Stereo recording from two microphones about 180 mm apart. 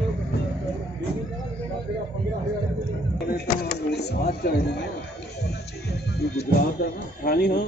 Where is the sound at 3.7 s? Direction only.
65° left (ahead or behind).